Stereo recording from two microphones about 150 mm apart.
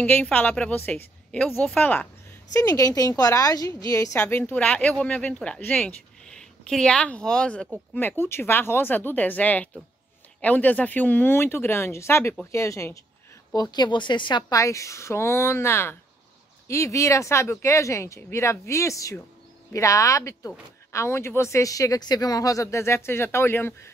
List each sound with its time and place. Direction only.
0.0 s speech: 10° left (ahead or behind)
2.5 s speech: 25° left (ahead or behind)